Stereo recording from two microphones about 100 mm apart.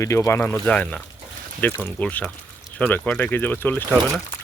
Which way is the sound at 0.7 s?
10° left (ahead or behind).